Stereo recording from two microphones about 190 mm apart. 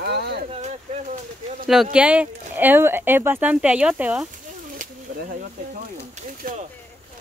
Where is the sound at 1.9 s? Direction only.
5° right (ahead or behind).